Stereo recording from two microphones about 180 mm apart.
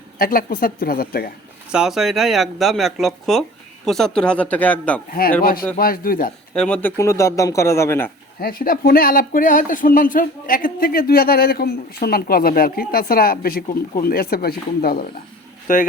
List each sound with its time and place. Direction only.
0.2 s speech: 50° left (ahead or behind)
1.7 s speech: 5° right (ahead or behind)
5.4 s a man's voice: 55° left (ahead or behind)
6.5 s speech: 5° left (ahead or behind)
8.4 s speech: 55° left (ahead or behind)